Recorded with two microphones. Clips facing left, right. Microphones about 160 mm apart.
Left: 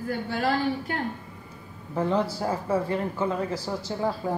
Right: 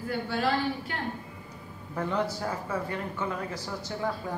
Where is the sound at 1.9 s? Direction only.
30° left (ahead or behind).